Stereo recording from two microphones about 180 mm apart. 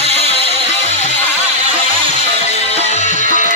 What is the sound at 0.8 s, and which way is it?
Music, 40° left (ahead or behind).